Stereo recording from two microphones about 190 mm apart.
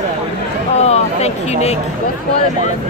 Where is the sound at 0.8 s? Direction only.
35° left (ahead or behind).